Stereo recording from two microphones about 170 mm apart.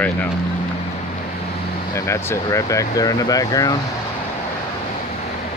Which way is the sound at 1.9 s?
15° left (ahead or behind).